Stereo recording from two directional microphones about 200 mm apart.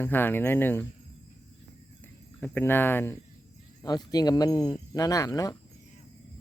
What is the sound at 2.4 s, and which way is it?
Speech, 10° left (ahead or behind).